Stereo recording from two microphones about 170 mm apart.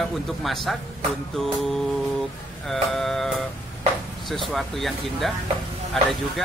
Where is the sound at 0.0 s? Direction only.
Centre (ahead or behind).